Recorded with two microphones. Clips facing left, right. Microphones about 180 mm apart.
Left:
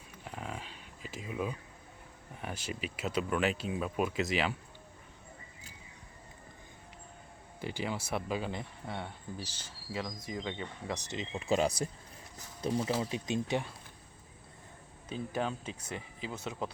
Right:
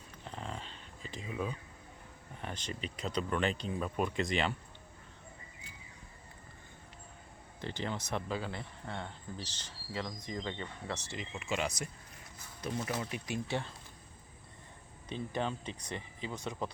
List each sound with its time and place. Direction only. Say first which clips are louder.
0.3 s a sound: left 1 dB; 10° left (ahead or behind)
2.4 s speech: left 2 dB; 5° left (ahead or behind)
7.6 s speech: left 2 dB; 10° left (ahead or behind)
15.1 s speech: left 1 dB; 5° left (ahead or behind)